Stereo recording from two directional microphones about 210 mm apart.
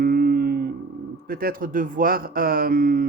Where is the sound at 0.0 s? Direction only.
45° right (ahead or behind).